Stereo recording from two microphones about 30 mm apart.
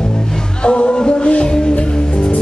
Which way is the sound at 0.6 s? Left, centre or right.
Left.